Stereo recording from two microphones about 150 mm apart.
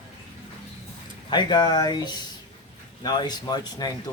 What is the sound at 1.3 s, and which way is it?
Speech, 30° left (ahead or behind).